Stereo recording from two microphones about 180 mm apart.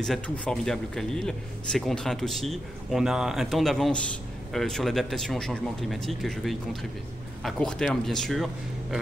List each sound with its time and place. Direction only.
0.0 s speech: 5° left (ahead or behind)